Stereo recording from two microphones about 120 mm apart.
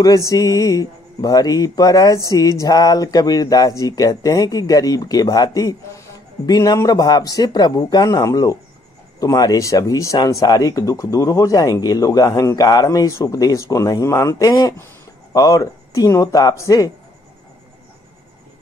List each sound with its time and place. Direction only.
0.0 s speech: 25° left (ahead or behind)